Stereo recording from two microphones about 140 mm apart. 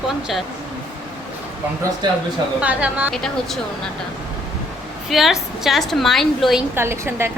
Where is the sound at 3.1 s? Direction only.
Centre (ahead or behind).